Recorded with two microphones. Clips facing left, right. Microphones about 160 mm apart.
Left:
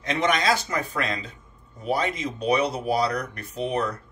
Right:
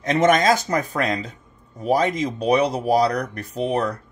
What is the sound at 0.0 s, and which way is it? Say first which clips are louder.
Speech: right 6 dB; 45° right (ahead or behind).